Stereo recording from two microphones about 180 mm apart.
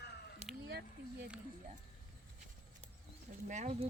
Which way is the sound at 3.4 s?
40° right (ahead or behind).